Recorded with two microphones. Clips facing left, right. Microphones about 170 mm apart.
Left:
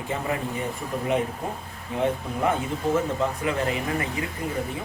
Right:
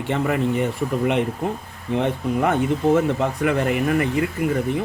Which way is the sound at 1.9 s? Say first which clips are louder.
Right 4 dB; 70° right (ahead or behind).